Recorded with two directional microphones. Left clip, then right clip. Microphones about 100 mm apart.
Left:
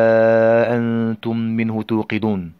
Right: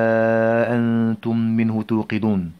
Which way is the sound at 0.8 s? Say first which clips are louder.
Even; 15° left (ahead or behind).